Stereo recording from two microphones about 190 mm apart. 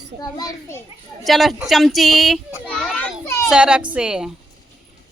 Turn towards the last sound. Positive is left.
turn(degrees=-5)  # may be behind; listen again after turning